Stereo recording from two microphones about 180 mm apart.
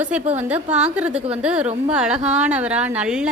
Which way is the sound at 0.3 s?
10° right (ahead or behind).